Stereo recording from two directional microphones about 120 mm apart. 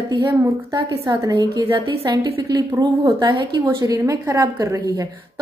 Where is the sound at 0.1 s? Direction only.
35° right (ahead or behind).